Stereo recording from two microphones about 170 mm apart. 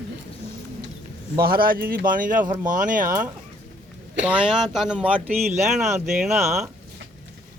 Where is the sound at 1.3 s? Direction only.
60° right (ahead or behind).